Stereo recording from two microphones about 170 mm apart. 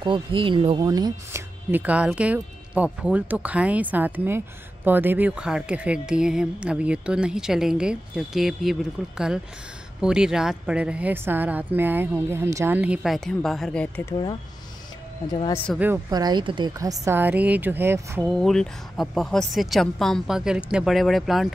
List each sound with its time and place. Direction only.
0.0 s speech: 30° right (ahead or behind)
1.7 s a woman's voice: 10° right (ahead or behind); by 14.1 s 10° left (ahead or behind)
15.5 s a woman's voice: 5° left (ahead or behind)
16.1 s a woman's voice: 25° right (ahead or behind)
18.2 s a woman's voice: centre (ahead or behind)